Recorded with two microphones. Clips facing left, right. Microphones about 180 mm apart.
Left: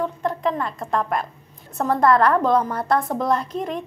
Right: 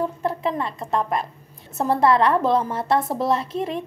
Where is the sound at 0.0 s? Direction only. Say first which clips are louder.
Even; 5° right (ahead or behind).